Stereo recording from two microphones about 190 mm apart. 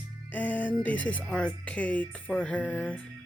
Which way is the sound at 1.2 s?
5° left (ahead or behind).